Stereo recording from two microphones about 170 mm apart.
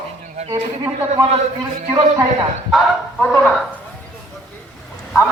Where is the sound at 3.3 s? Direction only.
10° left (ahead or behind).